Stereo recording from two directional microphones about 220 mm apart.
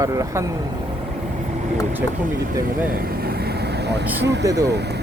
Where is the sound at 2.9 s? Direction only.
45° right (ahead or behind).